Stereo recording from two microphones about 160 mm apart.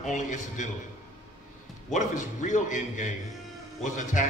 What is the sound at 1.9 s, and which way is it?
A man's voice, 50° left (ahead or behind).